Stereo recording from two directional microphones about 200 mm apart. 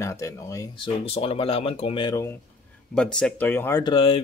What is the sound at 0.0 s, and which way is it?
Speech, 15° left (ahead or behind).